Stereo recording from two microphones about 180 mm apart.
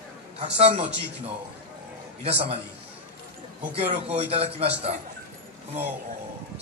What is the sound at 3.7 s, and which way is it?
Speech, 35° right (ahead or behind).